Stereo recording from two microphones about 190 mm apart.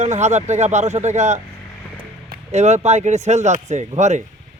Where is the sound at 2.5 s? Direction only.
35° right (ahead or behind).